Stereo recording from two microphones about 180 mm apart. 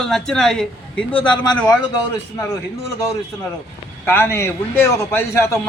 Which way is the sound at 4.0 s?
10° left (ahead or behind).